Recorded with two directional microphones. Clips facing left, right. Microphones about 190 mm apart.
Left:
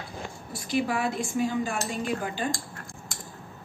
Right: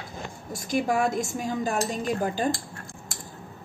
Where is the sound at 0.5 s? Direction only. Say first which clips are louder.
Right 2 dB; 45° right (ahead or behind).